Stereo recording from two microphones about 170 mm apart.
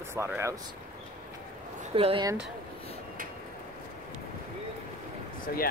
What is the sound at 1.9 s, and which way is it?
Speech, 30° right (ahead or behind).